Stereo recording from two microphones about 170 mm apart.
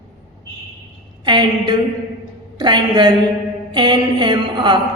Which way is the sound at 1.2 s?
25° right (ahead or behind).